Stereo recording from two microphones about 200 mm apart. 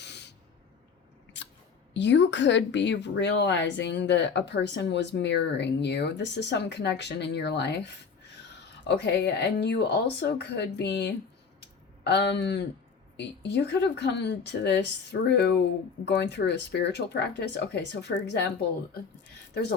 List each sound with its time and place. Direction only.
0.0 s spray: 60° left (ahead or behind)
1.4 s chewing: 60° left (ahead or behind)
1.9 s speech: 60° left (ahead or behind)